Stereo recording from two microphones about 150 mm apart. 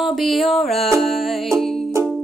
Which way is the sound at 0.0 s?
Centre (ahead or behind).